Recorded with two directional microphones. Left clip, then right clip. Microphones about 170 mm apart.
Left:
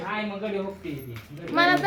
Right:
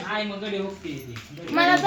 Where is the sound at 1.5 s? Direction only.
35° right (ahead or behind).